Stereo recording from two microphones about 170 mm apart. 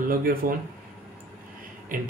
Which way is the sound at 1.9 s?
55° right (ahead or behind).